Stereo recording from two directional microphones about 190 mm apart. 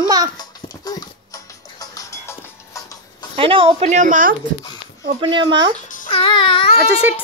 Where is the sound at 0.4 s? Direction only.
20° left (ahead or behind).